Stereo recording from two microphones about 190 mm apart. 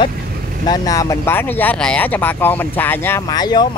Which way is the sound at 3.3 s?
20° left (ahead or behind).